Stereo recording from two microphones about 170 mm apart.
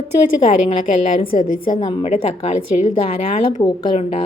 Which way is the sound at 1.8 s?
40° left (ahead or behind).